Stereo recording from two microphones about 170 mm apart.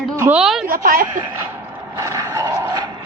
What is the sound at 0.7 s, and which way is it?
Speech, 55° right (ahead or behind).